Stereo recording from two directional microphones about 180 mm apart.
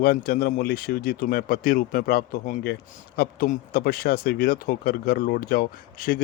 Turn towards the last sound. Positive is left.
turn(degrees=55)  # may be behind; listen again after turning